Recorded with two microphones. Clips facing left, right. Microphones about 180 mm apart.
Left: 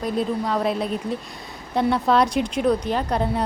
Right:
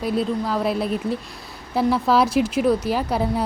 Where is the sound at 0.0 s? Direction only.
Centre (ahead or behind).